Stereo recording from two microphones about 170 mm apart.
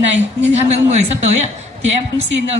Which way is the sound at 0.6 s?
40° right (ahead or behind).